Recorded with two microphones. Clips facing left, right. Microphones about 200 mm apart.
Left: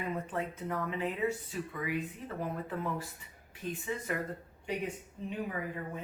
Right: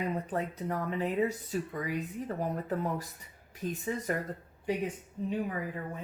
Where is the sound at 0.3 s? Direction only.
40° right (ahead or behind).